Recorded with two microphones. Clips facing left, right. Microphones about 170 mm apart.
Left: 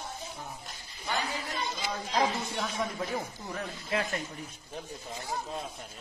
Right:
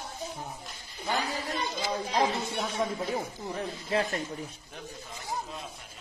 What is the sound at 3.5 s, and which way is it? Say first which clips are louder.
Speech: right 3 dB; 35° right (ahead or behind).